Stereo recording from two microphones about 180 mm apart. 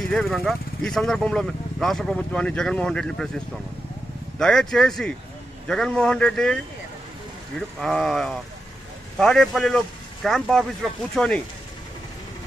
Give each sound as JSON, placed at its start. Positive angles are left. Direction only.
{"t": 0.0, "sound": "speech", "side_deg": 0}
{"t": 7.8, "sound": "speech", "side_deg": 0}